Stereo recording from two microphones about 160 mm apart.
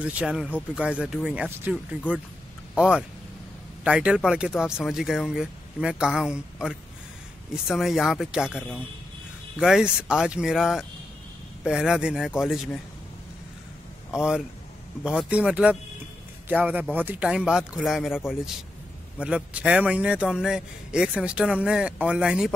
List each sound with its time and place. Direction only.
0.0 s a man's voice: 5° right (ahead or behind)
14.1 s a man's voice: 5° right (ahead or behind)